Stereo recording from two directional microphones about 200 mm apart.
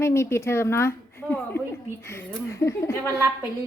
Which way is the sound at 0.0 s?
15° left (ahead or behind).